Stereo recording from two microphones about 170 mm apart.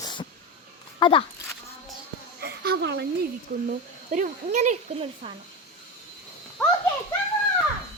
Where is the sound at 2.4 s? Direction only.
70° right (ahead or behind).